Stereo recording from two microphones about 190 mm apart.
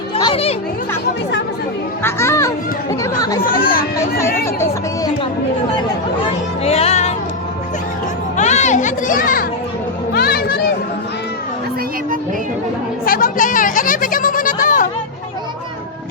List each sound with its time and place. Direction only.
0.2 s speech: 30° left (ahead or behind)
2.0 s a child's voice: 15° left (ahead or behind)
6.7 s music: 35° left (ahead or behind)
8.4 s a child's voice: 40° left (ahead or behind)
10.1 s a sound: 55° left (ahead or behind)
13.1 s a sound: 45° left (ahead or behind)